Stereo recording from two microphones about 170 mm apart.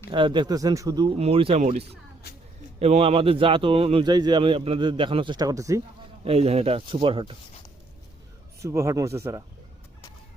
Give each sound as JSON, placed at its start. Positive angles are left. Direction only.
{"t": 0.1, "sound": "a man's voice", "side_deg": -30}
{"t": 6.2, "sound": "a man's voice", "side_deg": -35}
{"t": 8.6, "sound": "speech", "side_deg": -15}